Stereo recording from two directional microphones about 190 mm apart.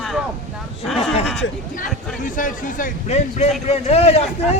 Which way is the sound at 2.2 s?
45° left (ahead or behind).